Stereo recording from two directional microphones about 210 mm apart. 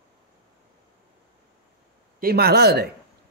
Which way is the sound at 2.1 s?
45° right (ahead or behind).